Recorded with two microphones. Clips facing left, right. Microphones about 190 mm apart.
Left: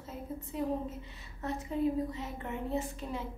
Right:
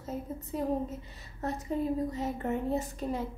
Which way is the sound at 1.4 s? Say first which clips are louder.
Right 1 dB; 40° right (ahead or behind).